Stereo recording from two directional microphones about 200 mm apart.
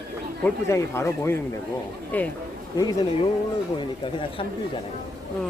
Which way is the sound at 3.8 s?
25° left (ahead or behind).